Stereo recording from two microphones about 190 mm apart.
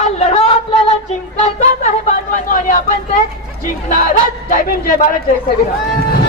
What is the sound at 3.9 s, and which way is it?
Speech, 45° left (ahead or behind).